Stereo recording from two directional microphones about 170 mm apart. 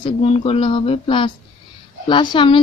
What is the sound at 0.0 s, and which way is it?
Speech, 35° left (ahead or behind).